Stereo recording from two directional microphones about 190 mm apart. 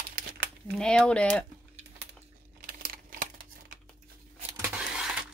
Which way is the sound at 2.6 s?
45° right (ahead or behind).